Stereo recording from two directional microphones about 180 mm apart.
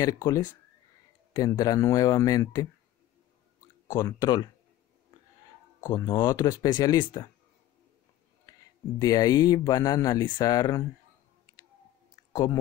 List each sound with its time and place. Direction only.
0.0 s speech: 20° left (ahead or behind)
3.8 s speech: 15° left (ahead or behind)
5.8 s speech: 20° left (ahead or behind)
8.5 s speech: 20° left (ahead or behind)
12.3 s speech: 20° left (ahead or behind)